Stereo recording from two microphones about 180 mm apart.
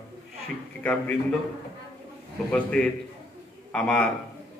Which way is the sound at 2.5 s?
5° left (ahead or behind).